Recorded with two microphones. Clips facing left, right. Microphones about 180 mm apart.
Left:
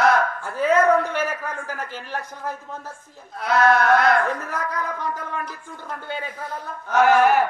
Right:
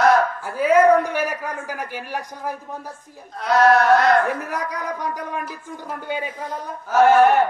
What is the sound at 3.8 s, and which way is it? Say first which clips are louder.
Speech: right 2 dB; 10° right (ahead or behind).